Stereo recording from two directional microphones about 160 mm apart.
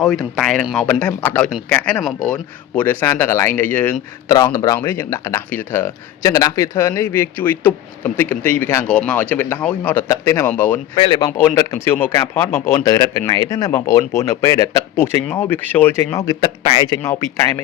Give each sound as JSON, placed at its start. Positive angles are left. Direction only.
{"t": 0.0, "sound": "speech", "side_deg": 0}
{"t": 10.9, "sound": "speech", "side_deg": 35}
{"t": 11.2, "sound": "speech", "side_deg": 15}
{"t": 17.0, "sound": "speech", "side_deg": 15}